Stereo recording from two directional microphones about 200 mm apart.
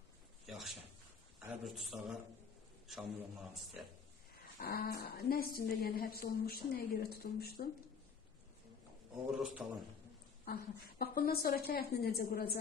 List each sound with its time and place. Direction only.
0.5 s a sound: centre (ahead or behind)
1.4 s a man's voice: centre (ahead or behind)
4.6 s a woman's voice: 50° left (ahead or behind)
9.6 s a man's voice: 5° right (ahead or behind)
10.4 s a woman's voice: 50° left (ahead or behind)